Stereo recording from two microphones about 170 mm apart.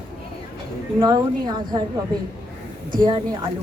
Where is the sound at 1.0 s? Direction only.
25° right (ahead or behind).